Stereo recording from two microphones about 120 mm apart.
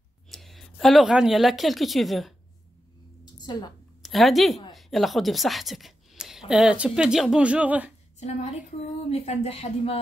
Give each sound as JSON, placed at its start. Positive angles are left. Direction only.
{"t": 0.3, "sound": "speech", "side_deg": 0}
{"t": 3.3, "sound": "a woman's voice", "side_deg": 35}
{"t": 4.0, "sound": "a woman's voice", "side_deg": 0}
{"t": 8.2, "sound": "a woman's voice", "side_deg": 70}